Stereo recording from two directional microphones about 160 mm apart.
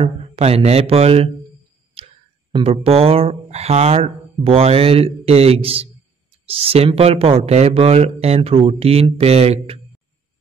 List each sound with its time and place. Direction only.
0.0 s speech: 40° right (ahead or behind)
2.0 s a sound: 40° right (ahead or behind)
2.5 s speech: 40° right (ahead or behind)